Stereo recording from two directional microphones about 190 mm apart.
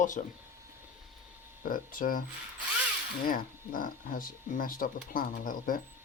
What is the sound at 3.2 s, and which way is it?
Speech, 45° left (ahead or behind).